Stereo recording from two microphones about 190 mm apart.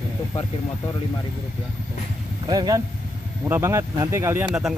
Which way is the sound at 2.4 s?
20° right (ahead or behind).